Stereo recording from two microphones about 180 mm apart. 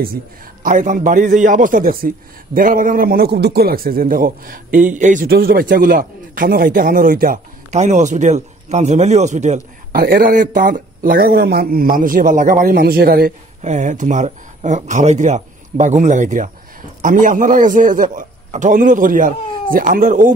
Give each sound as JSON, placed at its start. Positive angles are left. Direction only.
{"t": 0.7, "sound": "a man's voice", "side_deg": -45}
{"t": 9.9, "sound": "a man's voice", "side_deg": -55}
{"t": 13.6, "sound": "a man's voice", "side_deg": -40}